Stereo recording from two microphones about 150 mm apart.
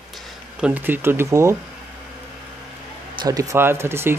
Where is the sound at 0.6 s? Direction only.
10° right (ahead or behind).